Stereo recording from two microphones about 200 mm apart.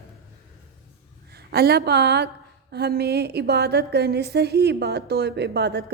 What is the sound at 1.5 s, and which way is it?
A woman's voice, 50° right (ahead or behind).